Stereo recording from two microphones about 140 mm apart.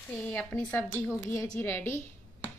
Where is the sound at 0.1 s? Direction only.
10° left (ahead or behind).